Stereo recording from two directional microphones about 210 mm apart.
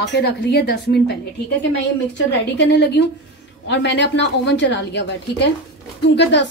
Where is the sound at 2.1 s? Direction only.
55° left (ahead or behind).